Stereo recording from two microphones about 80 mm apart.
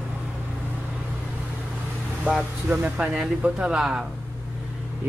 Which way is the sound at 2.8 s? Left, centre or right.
Centre.